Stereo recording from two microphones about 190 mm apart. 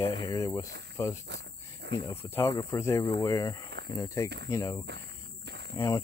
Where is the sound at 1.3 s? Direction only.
60° right (ahead or behind).